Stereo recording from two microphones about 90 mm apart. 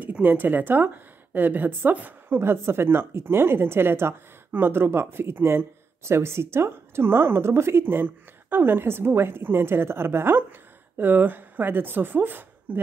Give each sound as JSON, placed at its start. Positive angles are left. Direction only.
{"t": 0.0, "sound": "a woman's voice", "side_deg": -20}